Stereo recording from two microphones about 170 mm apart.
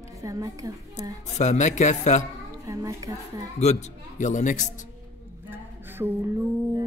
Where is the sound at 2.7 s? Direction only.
20° right (ahead or behind).